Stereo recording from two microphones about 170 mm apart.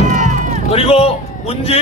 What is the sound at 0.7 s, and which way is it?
A man's voice, 35° left (ahead or behind).